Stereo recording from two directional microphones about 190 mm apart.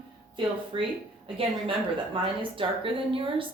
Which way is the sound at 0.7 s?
25° right (ahead or behind).